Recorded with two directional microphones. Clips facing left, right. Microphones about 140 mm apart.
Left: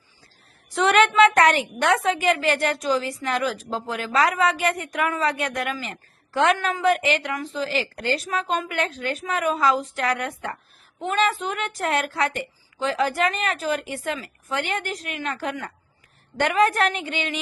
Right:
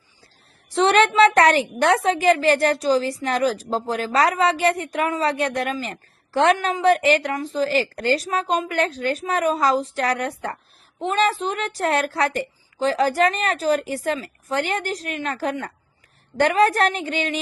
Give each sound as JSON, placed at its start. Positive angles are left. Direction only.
{"t": 0.7, "sound": "a woman's voice", "side_deg": -30}